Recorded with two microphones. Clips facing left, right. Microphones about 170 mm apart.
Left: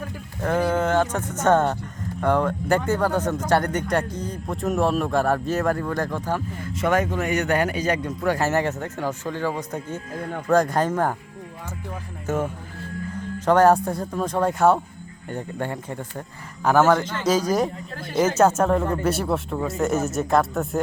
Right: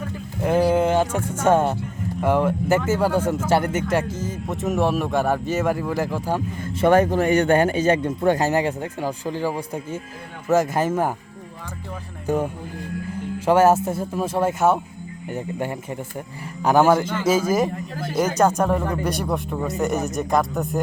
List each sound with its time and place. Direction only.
0.4 s speech: 10° right (ahead or behind)
6.6 s a man's voice: 30° right (ahead or behind); by 11.1 s 5° right (ahead or behind)
12.2 s speech: 15° right (ahead or behind)
18.3 s speech: 5° left (ahead or behind)